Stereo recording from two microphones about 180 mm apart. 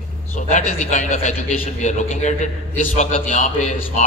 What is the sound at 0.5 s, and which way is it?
A man's voice, 45° left (ahead or behind).